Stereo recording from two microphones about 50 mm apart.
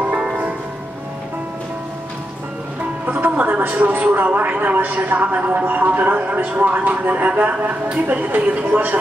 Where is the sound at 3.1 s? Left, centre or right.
Right.